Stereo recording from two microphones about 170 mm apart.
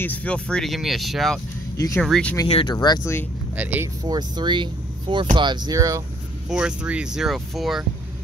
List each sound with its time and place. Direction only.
0.0 s speech: 10° left (ahead or behind)
2.4 s speech: 30° left (ahead or behind)
3.5 s speech: 10° right (ahead or behind)
4.1 s speech: 25° right (ahead or behind)
6.5 s speech: 5° right (ahead or behind)